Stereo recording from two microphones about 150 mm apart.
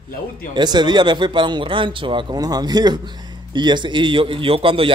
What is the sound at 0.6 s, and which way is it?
A man's voice, 30° right (ahead or behind).